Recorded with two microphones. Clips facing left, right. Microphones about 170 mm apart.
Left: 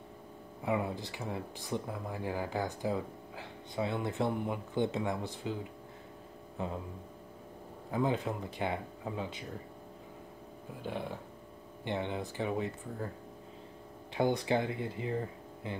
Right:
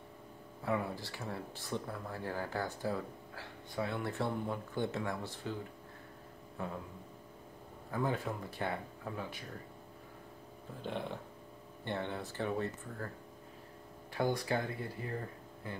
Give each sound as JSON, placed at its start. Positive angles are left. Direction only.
{"t": 0.6, "sound": "speech", "side_deg": 15}
{"t": 7.9, "sound": "speech", "side_deg": 20}
{"t": 10.8, "sound": "speech", "side_deg": 5}
{"t": 14.1, "sound": "speech", "side_deg": 20}